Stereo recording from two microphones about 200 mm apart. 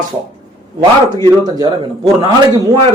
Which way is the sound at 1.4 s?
20° right (ahead or behind).